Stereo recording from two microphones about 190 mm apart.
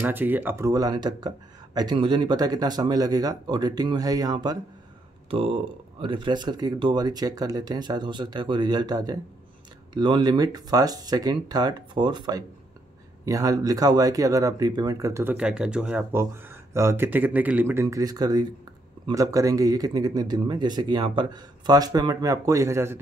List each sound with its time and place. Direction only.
0.0 s speech: 10° right (ahead or behind)
15.3 s speech: 5° right (ahead or behind)